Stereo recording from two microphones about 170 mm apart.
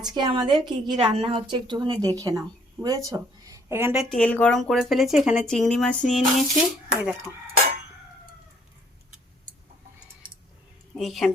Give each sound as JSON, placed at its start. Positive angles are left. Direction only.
{"t": 0.0, "sound": "a woman's voice", "side_deg": -25}
{"t": 3.9, "sound": "speech", "side_deg": 5}
{"t": 10.9, "sound": "speech", "side_deg": 0}